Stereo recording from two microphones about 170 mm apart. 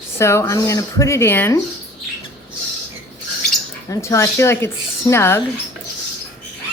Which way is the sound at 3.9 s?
15° left (ahead or behind).